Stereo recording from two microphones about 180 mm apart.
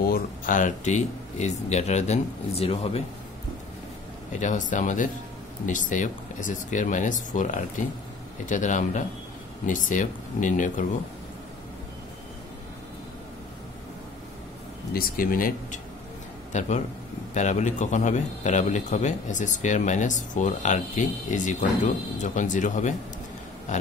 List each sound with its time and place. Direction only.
0.0 s speech: 50° left (ahead or behind); by 3.0 s 30° left (ahead or behind)
4.3 s a man's voice: 45° left (ahead or behind)
14.9 s a man's voice: 55° left (ahead or behind)
16.5 s a man's voice: 40° left (ahead or behind)